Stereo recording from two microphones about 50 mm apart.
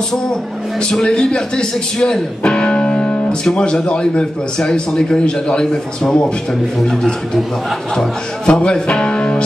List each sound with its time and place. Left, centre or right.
0.1 s a man's voice: centre
2.4 s music: centre
3.8 s a man's voice: centre
8.5 s a man's voice: centre